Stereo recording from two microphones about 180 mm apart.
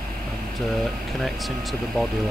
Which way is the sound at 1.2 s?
Centre (ahead or behind).